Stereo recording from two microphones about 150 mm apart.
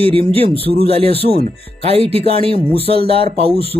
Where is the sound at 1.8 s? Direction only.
40° right (ahead or behind).